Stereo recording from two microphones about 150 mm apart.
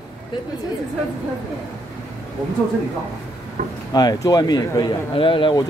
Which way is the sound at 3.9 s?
25° left (ahead or behind).